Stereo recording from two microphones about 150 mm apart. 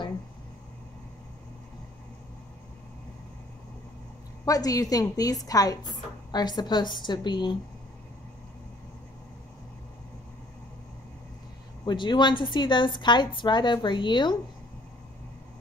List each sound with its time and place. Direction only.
4.5 s a woman's voice: 25° left (ahead or behind)
11.8 s a woman's voice: 30° left (ahead or behind)